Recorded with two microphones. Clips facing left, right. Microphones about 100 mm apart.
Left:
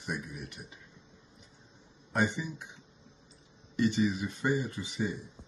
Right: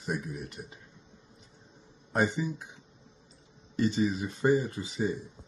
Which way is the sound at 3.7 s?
35° right (ahead or behind).